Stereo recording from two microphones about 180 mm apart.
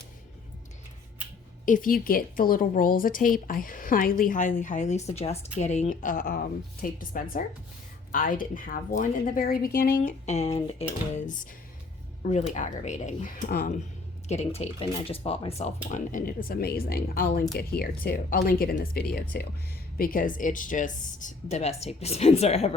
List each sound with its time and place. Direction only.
1.6 s a woman's voice: 50° left (ahead or behind)
14.3 s speech: 35° left (ahead or behind)
15.9 s a woman's voice: 45° left (ahead or behind)